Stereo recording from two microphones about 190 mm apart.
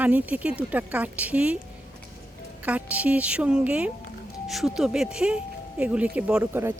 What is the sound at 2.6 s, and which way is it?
A man's voice, 5° right (ahead or behind).